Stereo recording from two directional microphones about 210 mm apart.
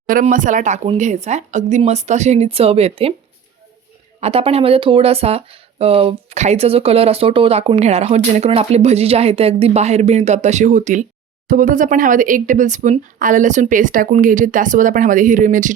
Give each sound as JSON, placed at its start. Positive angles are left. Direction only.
{"t": 0.1, "sound": "speech", "side_deg": -40}
{"t": 4.2, "sound": "speech", "side_deg": -30}